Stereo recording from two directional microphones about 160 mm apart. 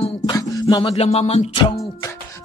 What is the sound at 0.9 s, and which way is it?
Music, 40° left (ahead or behind).